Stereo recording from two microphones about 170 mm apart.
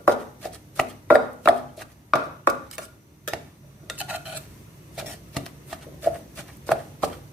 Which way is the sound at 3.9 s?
10° right (ahead or behind).